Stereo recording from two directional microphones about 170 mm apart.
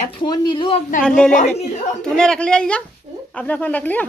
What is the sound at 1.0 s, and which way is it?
A woman's voice, 5° left (ahead or behind).